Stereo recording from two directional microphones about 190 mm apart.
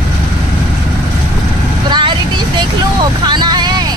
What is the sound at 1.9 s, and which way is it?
Vehicle, 25° right (ahead or behind).